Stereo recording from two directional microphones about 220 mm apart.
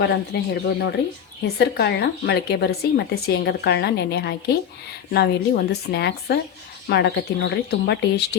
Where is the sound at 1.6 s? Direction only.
50° left (ahead or behind).